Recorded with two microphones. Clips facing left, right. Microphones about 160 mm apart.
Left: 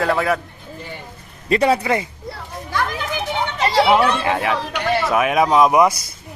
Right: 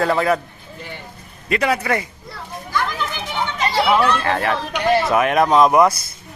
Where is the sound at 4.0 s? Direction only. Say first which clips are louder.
Even; 15° left (ahead or behind).